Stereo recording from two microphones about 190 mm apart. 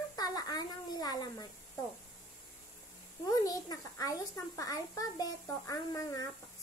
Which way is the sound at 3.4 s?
20° left (ahead or behind).